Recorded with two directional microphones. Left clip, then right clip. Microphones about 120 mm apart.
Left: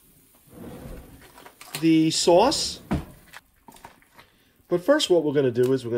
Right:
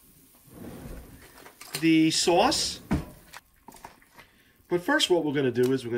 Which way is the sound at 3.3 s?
5° left (ahead or behind).